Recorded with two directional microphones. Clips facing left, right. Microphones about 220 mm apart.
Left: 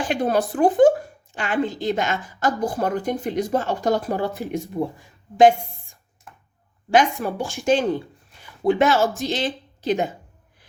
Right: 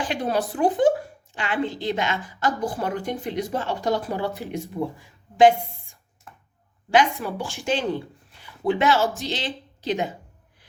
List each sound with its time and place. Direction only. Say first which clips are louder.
0.0 s a woman's voice: left 4 dB; 50° left (ahead or behind)
6.9 s a woman's voice: left 2 dB; 45° left (ahead or behind)